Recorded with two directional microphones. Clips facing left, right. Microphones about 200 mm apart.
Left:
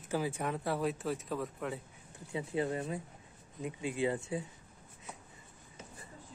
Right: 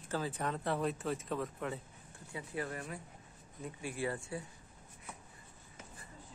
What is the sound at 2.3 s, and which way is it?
Speech, 25° left (ahead or behind).